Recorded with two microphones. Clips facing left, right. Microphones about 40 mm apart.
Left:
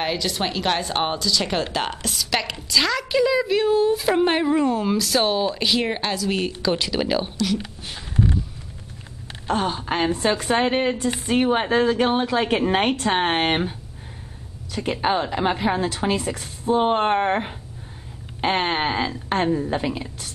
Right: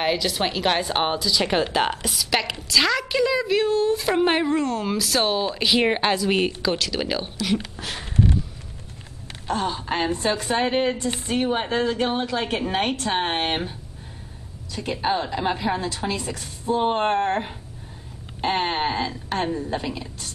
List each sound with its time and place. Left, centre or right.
0.0 s speech: centre
4.6 s speech: centre
5.8 s a woman's voice: right
6.8 s speech: centre
9.5 s a woman's voice: left
11.4 s a woman's voice: left
14.7 s a woman's voice: left
15.0 s a woman's voice: left
19.8 s a woman's voice: left